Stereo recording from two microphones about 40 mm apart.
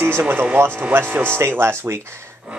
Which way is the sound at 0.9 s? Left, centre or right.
Right.